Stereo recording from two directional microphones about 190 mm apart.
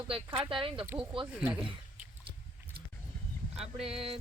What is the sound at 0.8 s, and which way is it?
Speech, 10° right (ahead or behind).